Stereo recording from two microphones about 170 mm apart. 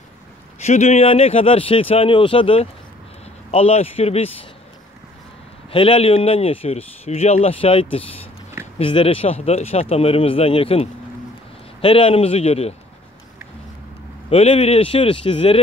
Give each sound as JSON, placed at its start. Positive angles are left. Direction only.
{"t": 0.6, "sound": "speech", "side_deg": 40}
{"t": 5.7, "sound": "speech", "side_deg": 30}
{"t": 14.3, "sound": "speech", "side_deg": 35}